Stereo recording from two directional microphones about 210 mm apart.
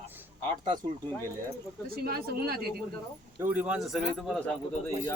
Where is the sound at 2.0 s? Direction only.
45° right (ahead or behind).